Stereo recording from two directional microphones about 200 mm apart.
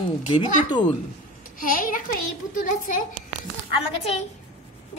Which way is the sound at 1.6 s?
45° left (ahead or behind).